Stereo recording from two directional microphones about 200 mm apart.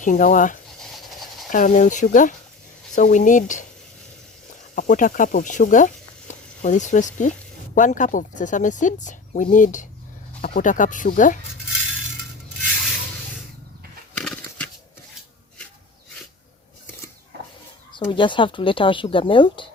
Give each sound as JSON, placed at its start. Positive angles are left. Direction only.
{"t": 0.0, "sound": "speech", "side_deg": 40}
{"t": 0.8, "sound": "a sound", "side_deg": 0}
{"t": 1.5, "sound": "speech", "side_deg": 40}
{"t": 4.7, "sound": "speech", "side_deg": 40}
{"t": 14.2, "sound": "a sound", "side_deg": 5}
{"t": 18.1, "sound": "speech", "side_deg": 25}